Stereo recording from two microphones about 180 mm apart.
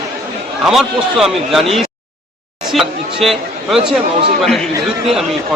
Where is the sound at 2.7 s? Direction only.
Centre (ahead or behind).